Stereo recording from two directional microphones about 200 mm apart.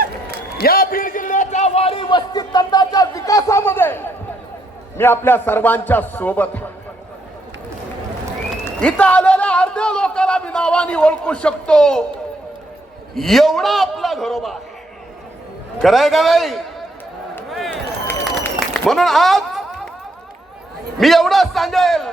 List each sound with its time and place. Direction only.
0.6 s a sound: 45° left (ahead or behind); by 4.0 s 10° left (ahead or behind)
4.9 s a man's voice: 10° left (ahead or behind)
8.6 s a man's voice: 5° left (ahead or behind)
13.1 s a man's voice: centre (ahead or behind)
15.8 s a man's voice: centre (ahead or behind)
17.5 s a sound: centre (ahead or behind)
21.0 s a man's voice: centre (ahead or behind)